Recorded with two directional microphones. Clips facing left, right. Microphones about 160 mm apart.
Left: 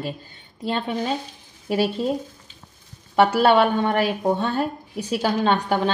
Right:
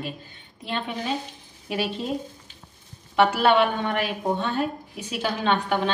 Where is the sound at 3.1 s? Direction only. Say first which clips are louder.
Left 3 dB; 40° left (ahead or behind).